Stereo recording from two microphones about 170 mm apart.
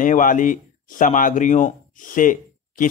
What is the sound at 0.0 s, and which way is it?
Speech, 50° left (ahead or behind).